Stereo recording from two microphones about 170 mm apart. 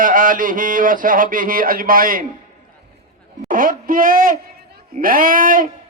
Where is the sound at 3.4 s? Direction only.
55° right (ahead or behind).